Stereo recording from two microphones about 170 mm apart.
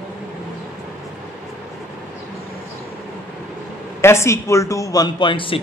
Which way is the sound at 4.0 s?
15° left (ahead or behind).